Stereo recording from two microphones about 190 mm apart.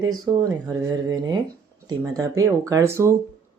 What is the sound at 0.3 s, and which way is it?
Speech, 20° right (ahead or behind).